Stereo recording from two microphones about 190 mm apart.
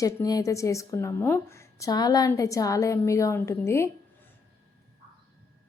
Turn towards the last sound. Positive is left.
turn(degrees=15)  # may be behind; listen again after turning